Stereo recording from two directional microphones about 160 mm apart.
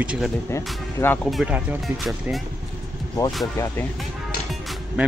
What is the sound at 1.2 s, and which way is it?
Speech, 5° right (ahead or behind).